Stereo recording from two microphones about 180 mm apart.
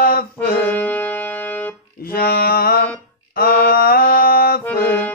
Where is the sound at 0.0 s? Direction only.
55° left (ahead or behind).